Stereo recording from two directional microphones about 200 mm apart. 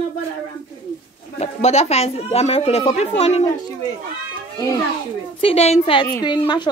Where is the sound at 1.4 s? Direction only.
35° left (ahead or behind).